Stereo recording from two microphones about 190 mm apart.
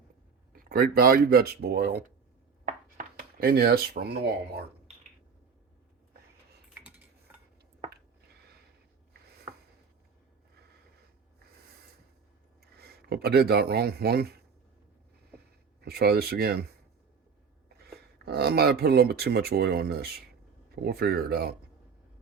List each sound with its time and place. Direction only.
0.5 s speech: 50° right (ahead or behind)
3.2 s speech: 55° right (ahead or behind)
6.7 s cutlery: 10° right (ahead or behind)
12.7 s speech: 55° right (ahead or behind)
15.8 s speech: 55° right (ahead or behind)
17.7 s speech: 55° right (ahead or behind)